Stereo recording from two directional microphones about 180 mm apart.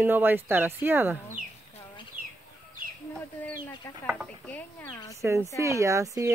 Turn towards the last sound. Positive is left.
turn(degrees=-15)  # may be behind; listen again after turning